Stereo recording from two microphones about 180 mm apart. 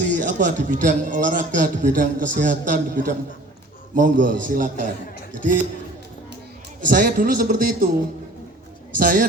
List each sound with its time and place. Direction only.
0.1 s a man's voice: 45° right (ahead or behind)
6.8 s a man's voice: 50° right (ahead or behind)
9.0 s a man's voice: 50° right (ahead or behind)